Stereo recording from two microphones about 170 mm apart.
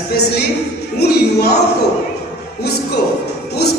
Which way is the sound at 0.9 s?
75° left (ahead or behind).